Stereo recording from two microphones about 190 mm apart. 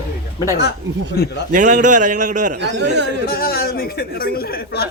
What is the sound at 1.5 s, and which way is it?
Speech, 40° right (ahead or behind).